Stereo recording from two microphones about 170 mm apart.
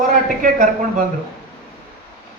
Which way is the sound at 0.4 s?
55° right (ahead or behind).